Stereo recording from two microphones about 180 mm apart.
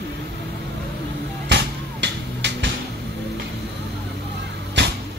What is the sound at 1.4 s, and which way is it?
Music, 75° right (ahead or behind).